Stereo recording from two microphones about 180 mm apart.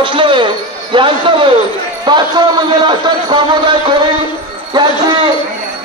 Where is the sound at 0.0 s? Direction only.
25° right (ahead or behind).